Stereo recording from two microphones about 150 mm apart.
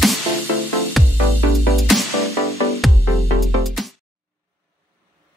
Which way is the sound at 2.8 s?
Centre (ahead or behind).